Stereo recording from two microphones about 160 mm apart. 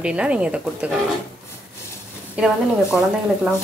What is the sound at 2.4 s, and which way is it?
Speech, 5° right (ahead or behind).